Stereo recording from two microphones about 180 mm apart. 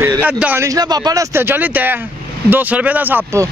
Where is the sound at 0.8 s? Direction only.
20° right (ahead or behind).